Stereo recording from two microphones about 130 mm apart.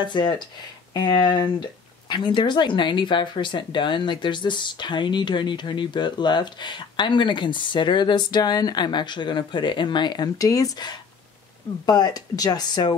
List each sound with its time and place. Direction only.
0.0 s speech: 35° left (ahead or behind)